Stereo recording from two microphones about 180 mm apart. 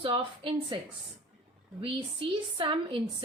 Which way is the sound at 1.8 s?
30° right (ahead or behind).